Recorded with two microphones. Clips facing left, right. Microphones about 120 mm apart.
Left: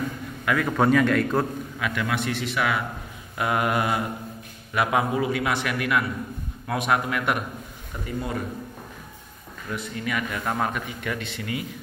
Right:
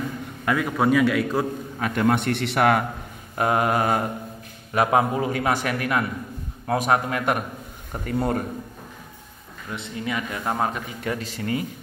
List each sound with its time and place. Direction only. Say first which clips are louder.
0.7 s a man's voice: even; 5° right (ahead or behind)
1.8 s a man's voice: right 6 dB; 45° right (ahead or behind); by 2.8 s 60° right (ahead or behind)
3.3 s a man's voice: right 3 dB; 35° right (ahead or behind)
7.9 s speech: right 6 dB; 55° right (ahead or behind)
9.7 s a man's voice: even; 25° right (ahead or behind)